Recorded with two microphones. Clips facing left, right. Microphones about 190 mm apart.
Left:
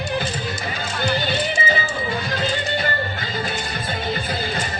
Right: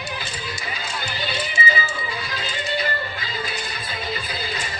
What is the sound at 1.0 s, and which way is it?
Music, 50° left (ahead or behind).